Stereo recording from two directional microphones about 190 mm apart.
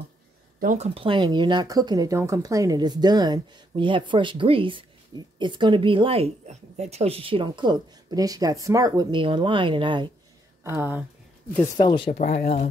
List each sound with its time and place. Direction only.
0.6 s speech: 40° right (ahead or behind); by 10.1 s 25° right (ahead or behind)
10.6 s speech: 15° right (ahead or behind)
11.7 s speech: 25° left (ahead or behind)
12.2 s speech: 40° left (ahead or behind)